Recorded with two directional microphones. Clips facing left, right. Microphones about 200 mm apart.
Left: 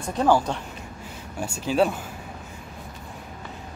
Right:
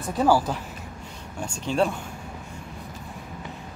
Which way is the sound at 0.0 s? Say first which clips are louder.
Even; 5° right (ahead or behind).